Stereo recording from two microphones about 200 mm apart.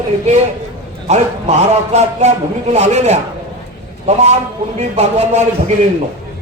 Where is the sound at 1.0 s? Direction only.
35° right (ahead or behind).